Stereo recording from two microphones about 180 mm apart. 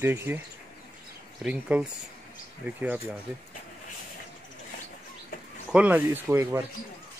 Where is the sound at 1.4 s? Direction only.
5° right (ahead or behind).